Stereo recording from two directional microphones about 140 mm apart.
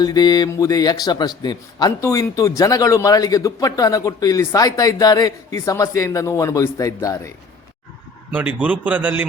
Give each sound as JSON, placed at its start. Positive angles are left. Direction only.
{"t": 0.0, "sound": "a man's voice", "side_deg": 30}
{"t": 8.3, "sound": "a man's voice", "side_deg": -10}